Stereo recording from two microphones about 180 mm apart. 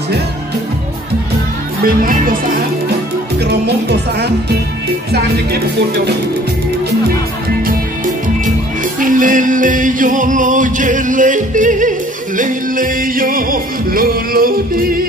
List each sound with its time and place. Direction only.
1.9 s music: 50° right (ahead or behind)
3.3 s speech: 65° right (ahead or behind)
9.0 s music: 50° right (ahead or behind)